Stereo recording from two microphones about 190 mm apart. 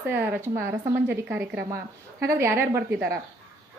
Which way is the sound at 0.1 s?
10° right (ahead or behind).